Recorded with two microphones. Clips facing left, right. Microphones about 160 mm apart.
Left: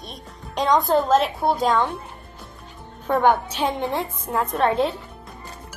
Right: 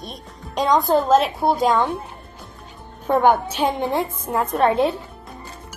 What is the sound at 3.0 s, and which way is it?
A woman's voice, centre (ahead or behind).